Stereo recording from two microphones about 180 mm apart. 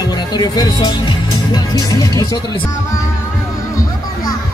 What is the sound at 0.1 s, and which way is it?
Speech, 25° left (ahead or behind).